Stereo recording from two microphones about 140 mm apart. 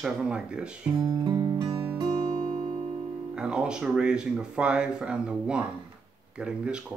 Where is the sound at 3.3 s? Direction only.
5° right (ahead or behind).